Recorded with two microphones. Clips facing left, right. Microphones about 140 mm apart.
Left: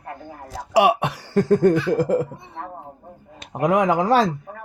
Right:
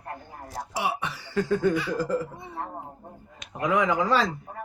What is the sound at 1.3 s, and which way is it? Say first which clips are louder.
Chuckle: left 7 dB; 45° left (ahead or behind).